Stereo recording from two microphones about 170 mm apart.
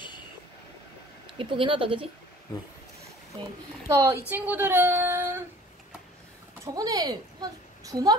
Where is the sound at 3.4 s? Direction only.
15° right (ahead or behind).